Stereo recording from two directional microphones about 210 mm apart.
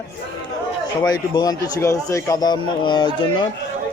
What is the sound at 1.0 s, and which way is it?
Speech, 20° left (ahead or behind).